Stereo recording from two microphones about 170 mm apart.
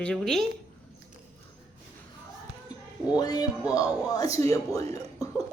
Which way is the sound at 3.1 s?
25° left (ahead or behind).